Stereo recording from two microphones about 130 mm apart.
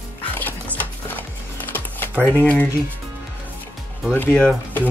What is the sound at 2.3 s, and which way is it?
Speech, 10° left (ahead or behind).